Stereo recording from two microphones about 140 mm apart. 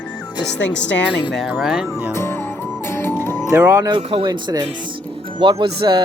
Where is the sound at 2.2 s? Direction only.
15° left (ahead or behind).